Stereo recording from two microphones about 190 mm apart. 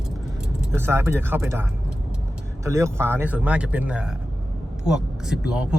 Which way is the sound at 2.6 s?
15° right (ahead or behind).